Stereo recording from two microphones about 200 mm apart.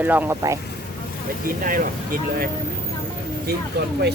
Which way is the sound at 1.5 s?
45° right (ahead or behind).